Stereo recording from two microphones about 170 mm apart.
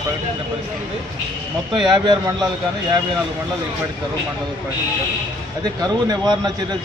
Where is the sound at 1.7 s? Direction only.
25° right (ahead or behind).